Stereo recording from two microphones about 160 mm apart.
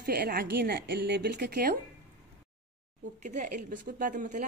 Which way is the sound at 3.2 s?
55° right (ahead or behind).